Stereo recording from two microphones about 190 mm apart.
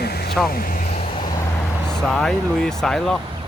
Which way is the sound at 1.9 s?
Centre (ahead or behind).